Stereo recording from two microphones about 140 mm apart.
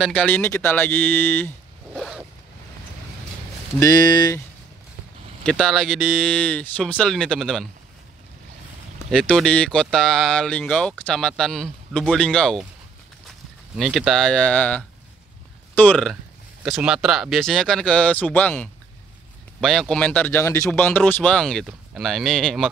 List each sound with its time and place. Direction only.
0.0 s speech: 5° left (ahead or behind)
2.0 s zipper: centre (ahead or behind)
3.8 s speech: 30° left (ahead or behind)
5.4 s speech: 5° left (ahead or behind)
9.1 s speech: 5° left (ahead or behind)
13.7 s speech: centre (ahead or behind)
16.6 s speech: 5° right (ahead or behind)